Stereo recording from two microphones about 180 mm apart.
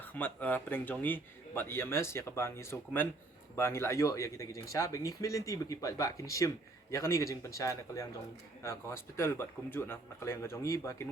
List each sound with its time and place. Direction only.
0.0 s a man's voice: 10° left (ahead or behind)